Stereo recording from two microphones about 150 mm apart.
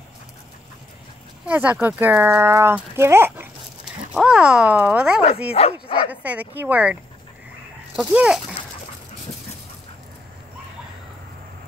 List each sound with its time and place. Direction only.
1.4 s speech: 10° right (ahead or behind)
3.8 s speech: 5° right (ahead or behind)
5.5 s speech: 40° left (ahead or behind)
6.0 s speech: 10° right (ahead or behind)